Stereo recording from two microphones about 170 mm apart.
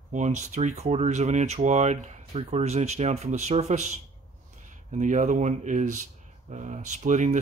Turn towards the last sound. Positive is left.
turn(degrees=-45)  # may be behind; listen again after turning